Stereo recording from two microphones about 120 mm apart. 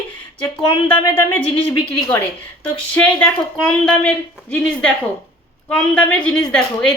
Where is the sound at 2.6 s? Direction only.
10° left (ahead or behind).